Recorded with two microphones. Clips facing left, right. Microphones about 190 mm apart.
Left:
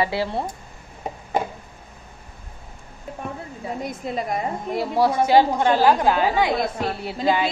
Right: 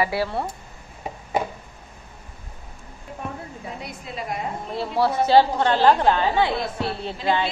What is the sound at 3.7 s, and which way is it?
Speech, 45° left (ahead or behind).